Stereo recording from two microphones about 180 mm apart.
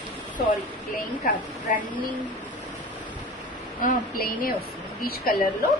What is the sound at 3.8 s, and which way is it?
A woman's voice, 55° left (ahead or behind).